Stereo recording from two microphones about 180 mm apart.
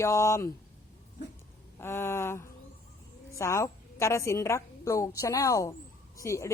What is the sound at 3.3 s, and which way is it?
A woman's voice, 15° left (ahead or behind).